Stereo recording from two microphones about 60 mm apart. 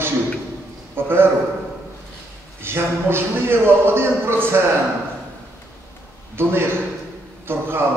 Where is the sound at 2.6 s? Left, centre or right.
Right.